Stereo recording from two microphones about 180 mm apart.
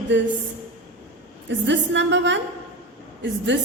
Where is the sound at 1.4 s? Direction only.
80° right.